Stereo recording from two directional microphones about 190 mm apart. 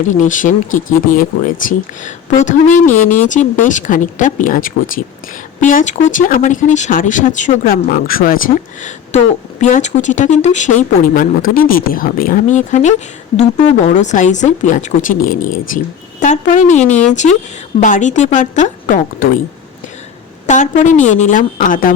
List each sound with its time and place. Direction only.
0.1 s speech: 40° left (ahead or behind)
13.9 s speech: 40° left (ahead or behind)
16.8 s speech: 5° left (ahead or behind)
17.1 s speech: 40° left (ahead or behind)
20.5 s speech: 40° left (ahead or behind)